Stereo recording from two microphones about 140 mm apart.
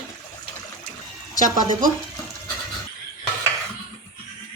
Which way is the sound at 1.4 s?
65° right (ahead or behind).